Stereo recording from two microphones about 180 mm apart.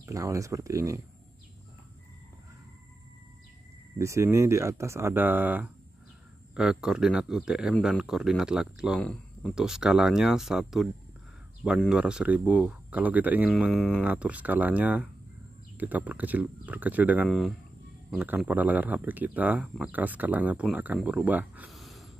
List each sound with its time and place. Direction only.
0.0 s speech: 15° right (ahead or behind)
4.0 s speech: 15° right (ahead or behind)
13.5 s speech: centre (ahead or behind)
14.0 s speech: 10° right (ahead or behind)
17.3 s speech: centre (ahead or behind)